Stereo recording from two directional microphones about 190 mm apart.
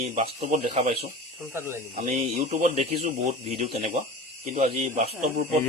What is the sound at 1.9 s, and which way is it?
Speech, 40° right (ahead or behind).